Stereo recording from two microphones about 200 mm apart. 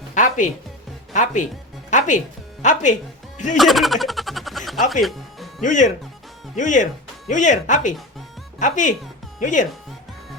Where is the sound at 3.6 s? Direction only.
Centre (ahead or behind).